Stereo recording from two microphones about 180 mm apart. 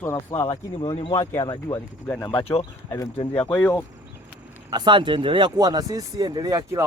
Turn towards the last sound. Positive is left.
turn(degrees=-15)  # may be behind; listen again after turning